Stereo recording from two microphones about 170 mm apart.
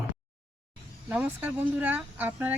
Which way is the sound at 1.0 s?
10° right (ahead or behind).